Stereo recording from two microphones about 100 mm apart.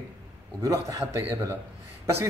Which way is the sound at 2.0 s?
25° right (ahead or behind).